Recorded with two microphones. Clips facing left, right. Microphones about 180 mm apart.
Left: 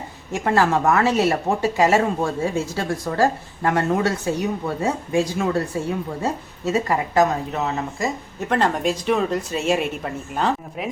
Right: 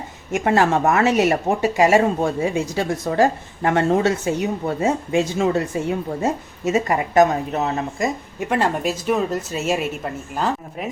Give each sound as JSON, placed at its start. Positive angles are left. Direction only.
{"t": 0.3, "sound": "speech", "side_deg": -20}
{"t": 8.4, "sound": "speech", "side_deg": -10}